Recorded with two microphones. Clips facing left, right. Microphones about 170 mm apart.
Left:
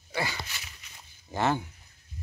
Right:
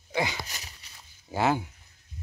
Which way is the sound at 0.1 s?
15° right (ahead or behind).